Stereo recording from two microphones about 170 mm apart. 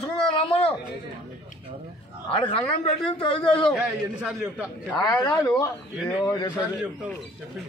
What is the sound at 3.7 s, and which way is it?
Speech, centre (ahead or behind).